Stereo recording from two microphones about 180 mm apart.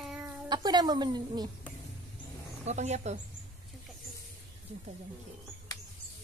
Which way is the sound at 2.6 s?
40° right (ahead or behind).